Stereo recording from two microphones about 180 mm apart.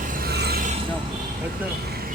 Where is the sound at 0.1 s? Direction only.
60° right (ahead or behind).